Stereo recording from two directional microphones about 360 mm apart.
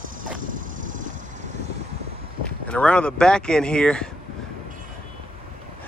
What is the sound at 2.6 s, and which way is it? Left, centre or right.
Speech, centre.